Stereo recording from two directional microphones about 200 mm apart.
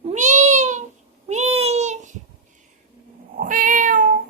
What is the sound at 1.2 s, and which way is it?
Babbling, 35° right (ahead or behind).